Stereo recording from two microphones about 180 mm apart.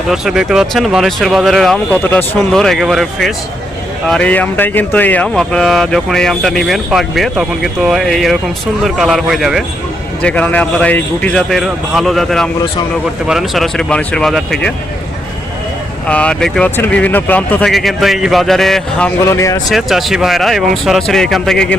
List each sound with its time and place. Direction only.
0.1 s speech: 5° right (ahead or behind)
16.0 s speech: 5° left (ahead or behind)
19.2 s speech: 15° left (ahead or behind)
19.7 s speech: centre (ahead or behind)